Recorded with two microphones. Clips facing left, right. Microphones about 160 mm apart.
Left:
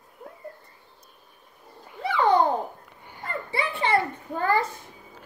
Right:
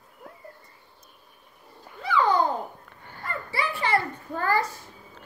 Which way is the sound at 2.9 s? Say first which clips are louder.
Left 1 dB; 15° left (ahead or behind).